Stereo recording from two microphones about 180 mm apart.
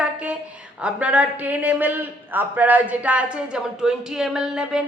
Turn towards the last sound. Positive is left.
turn(degrees=-5)  # may be behind; listen again after turning